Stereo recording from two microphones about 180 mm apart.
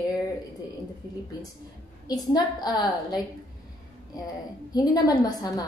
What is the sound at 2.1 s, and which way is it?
A woman's voice, 20° left (ahead or behind).